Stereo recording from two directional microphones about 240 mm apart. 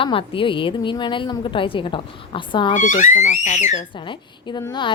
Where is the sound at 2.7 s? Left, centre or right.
Left.